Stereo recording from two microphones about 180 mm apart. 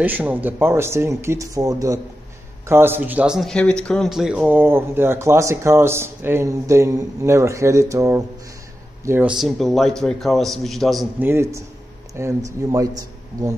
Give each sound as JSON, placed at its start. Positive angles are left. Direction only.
{"t": 0.0, "sound": "a man's voice", "side_deg": -10}
{"t": 11.1, "sound": "a man's voice", "side_deg": -15}